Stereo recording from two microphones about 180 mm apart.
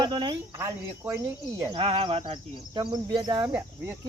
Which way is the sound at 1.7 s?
30° right (ahead or behind).